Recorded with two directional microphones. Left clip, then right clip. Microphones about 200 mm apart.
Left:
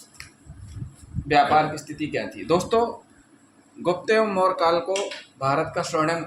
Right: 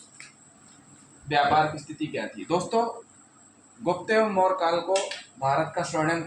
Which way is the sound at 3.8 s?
40° left (ahead or behind).